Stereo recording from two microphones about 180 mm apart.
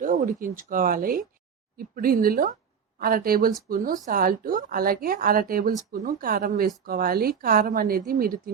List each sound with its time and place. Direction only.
0.0 s a woman's voice: 50° right (ahead or behind)